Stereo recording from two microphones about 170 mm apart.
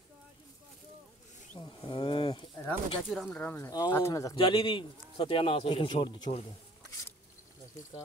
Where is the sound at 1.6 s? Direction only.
30° left (ahead or behind).